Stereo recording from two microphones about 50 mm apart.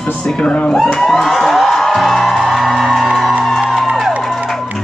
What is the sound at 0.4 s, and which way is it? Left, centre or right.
Speech, centre.